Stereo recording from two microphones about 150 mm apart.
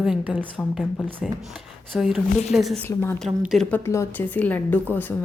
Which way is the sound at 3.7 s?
15° left (ahead or behind).